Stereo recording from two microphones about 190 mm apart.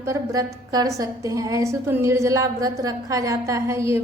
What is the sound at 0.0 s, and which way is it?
A woman's voice, 15° right (ahead or behind).